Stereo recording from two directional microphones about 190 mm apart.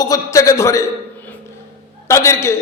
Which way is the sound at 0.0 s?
20° left (ahead or behind).